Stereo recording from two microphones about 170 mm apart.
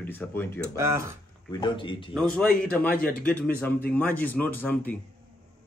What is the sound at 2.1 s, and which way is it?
A man's voice, 5° left (ahead or behind).